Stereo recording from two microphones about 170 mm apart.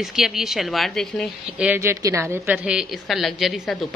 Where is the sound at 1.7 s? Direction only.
15° right (ahead or behind).